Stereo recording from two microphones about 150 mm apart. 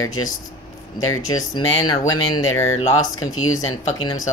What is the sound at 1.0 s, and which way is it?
Speech, 20° left (ahead or behind).